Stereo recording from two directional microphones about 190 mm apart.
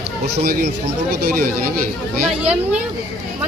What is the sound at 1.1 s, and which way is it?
Speech, 50° right (ahead or behind).